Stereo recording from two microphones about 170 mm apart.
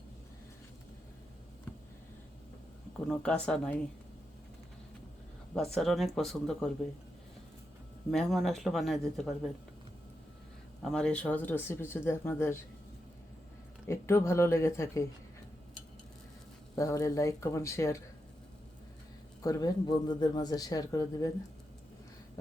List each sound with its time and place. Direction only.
3.1 s speech: 5° left (ahead or behind)
5.5 s speech: centre (ahead or behind)
8.1 s speech: centre (ahead or behind)
10.8 s speech: 5° left (ahead or behind)
13.8 s speech: 15° left (ahead or behind)
16.7 s speech: 20° left (ahead or behind)
19.4 s speech: 20° left (ahead or behind)